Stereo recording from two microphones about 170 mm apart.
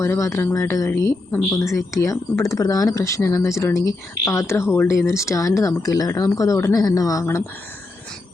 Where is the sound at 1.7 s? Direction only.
20° left (ahead or behind).